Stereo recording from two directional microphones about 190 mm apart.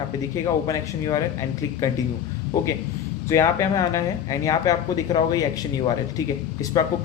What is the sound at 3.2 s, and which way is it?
A man's voice, 15° left (ahead or behind).